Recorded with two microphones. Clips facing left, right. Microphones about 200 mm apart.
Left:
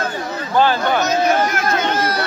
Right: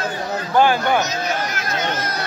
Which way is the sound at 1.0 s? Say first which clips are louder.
Left 7 dB; 55° left (ahead or behind).